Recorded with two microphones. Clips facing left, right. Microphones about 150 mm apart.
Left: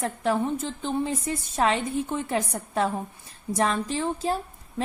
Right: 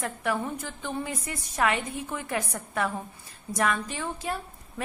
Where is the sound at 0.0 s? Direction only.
30° left (ahead or behind).